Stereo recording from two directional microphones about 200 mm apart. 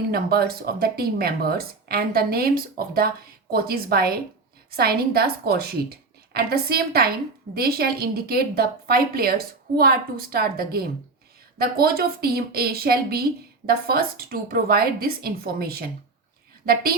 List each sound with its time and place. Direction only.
0.1 s a woman's voice: 50° right (ahead or behind)